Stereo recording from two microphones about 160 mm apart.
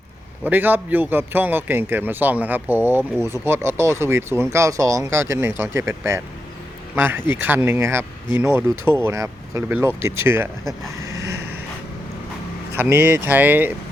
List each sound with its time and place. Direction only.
0.4 s speech: 10° right (ahead or behind)
11.0 s a sound: 20° right (ahead or behind)
12.7 s speech: 15° right (ahead or behind)